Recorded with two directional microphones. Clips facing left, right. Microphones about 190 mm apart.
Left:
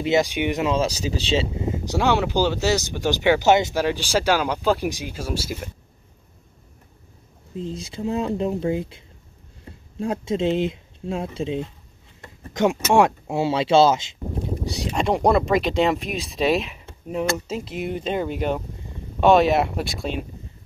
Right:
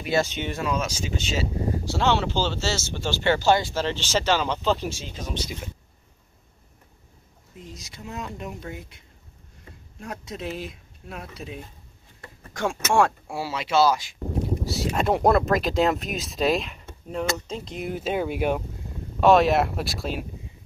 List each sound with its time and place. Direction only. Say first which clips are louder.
0.0 s speech: left 5 dB; 15° left (ahead or behind)
0.7 s speech: left 5 dB; 35° left (ahead or behind)
1.6 s speech: left 2 dB; 20° left (ahead or behind)
7.5 s speech: left 12 dB; 30° left (ahead or behind)
14.6 s speech: left 1 dB; centre (ahead or behind)